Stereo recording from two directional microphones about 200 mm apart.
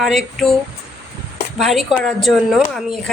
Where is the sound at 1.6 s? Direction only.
Centre (ahead or behind).